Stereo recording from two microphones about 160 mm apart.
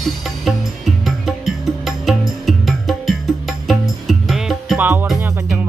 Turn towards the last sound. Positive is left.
turn(degrees=-10)  # may be behind; listen again after turning